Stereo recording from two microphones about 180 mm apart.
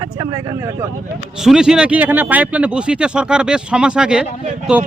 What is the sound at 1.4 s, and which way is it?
Speech, 5° right (ahead or behind).